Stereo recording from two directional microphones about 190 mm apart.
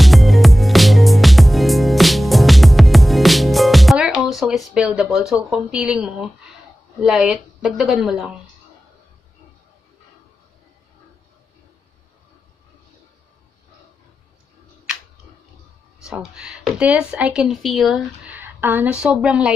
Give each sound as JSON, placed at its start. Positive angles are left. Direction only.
{"t": 0.0, "sound": "music", "side_deg": 0}
{"t": 7.0, "sound": "speech", "side_deg": 0}
{"t": 16.1, "sound": "speech", "side_deg": -5}